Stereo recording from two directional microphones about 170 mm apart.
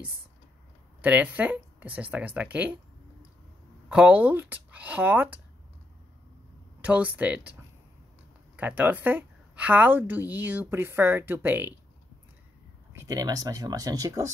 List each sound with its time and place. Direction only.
1.0 s a woman's voice: 10° right (ahead or behind)
3.9 s a woman's voice: 10° right (ahead or behind)
6.8 s a woman's voice: 10° right (ahead or behind)
8.5 s a woman's voice: 10° right (ahead or behind)
13.0 s speech: 20° right (ahead or behind)